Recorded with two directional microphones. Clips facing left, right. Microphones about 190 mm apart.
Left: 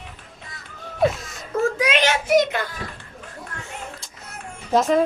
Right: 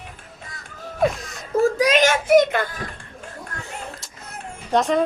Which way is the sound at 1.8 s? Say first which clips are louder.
Right 3 dB; 40° right (ahead or behind).